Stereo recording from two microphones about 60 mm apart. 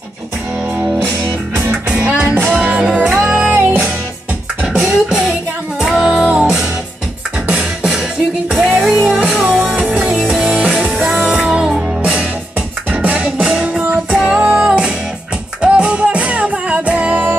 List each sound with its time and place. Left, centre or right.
2.0 s music: right
2.8 s music: centre
3.3 s music: right
5.8 s music: centre
7.8 s music: centre
9.8 s music: centre; by 14.0 s right
14.1 s music: centre; by 17.4 s right